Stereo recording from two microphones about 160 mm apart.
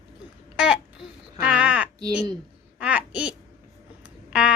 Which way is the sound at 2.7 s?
5° right (ahead or behind).